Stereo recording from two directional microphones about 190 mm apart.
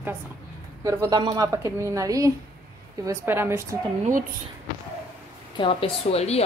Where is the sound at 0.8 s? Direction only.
15° right (ahead or behind).